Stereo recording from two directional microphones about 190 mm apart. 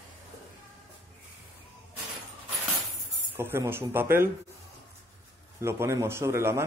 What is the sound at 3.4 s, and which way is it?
Speech, 10° right (ahead or behind).